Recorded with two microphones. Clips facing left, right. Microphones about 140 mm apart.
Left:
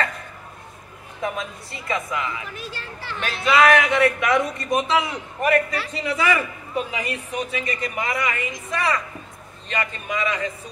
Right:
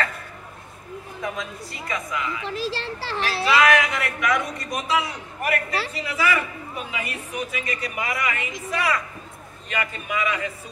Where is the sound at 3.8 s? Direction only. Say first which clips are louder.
Left 6 dB; 25° left (ahead or behind).